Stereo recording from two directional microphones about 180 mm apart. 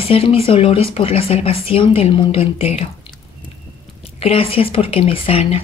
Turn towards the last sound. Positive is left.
turn(degrees=30)  # may be behind; listen again after turning